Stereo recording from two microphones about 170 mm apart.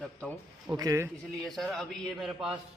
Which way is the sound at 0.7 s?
15° right (ahead or behind).